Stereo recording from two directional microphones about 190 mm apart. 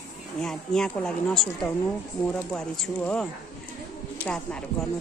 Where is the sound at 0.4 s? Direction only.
5° left (ahead or behind).